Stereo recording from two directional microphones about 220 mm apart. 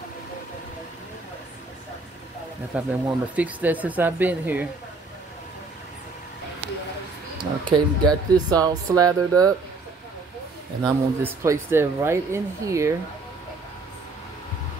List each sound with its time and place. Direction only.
2.7 s speech: 5° right (ahead or behind)
7.6 s speech: 20° right (ahead or behind)
10.8 s speech: 15° right (ahead or behind)